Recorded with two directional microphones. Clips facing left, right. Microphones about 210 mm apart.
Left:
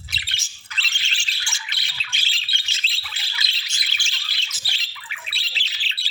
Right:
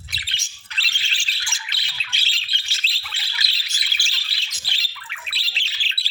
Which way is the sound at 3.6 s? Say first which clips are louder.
Even; 35° right (ahead or behind).